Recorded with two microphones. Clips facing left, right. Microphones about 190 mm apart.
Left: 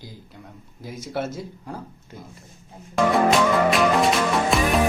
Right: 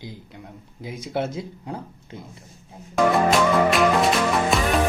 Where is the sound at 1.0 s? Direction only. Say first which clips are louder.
Right 2 dB; 15° right (ahead or behind).